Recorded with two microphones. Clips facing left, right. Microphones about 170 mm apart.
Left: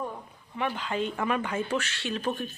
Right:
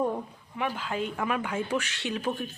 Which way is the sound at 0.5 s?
5° right (ahead or behind).